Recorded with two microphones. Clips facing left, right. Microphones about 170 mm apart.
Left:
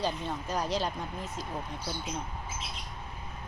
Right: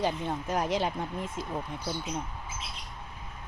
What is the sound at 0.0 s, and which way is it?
Speech, 20° right (ahead or behind).